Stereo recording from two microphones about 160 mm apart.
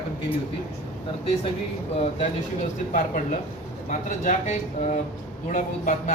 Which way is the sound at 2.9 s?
55° left (ahead or behind).